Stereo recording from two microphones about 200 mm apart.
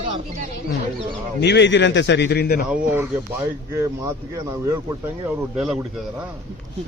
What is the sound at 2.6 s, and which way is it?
Speech, 10° right (ahead or behind).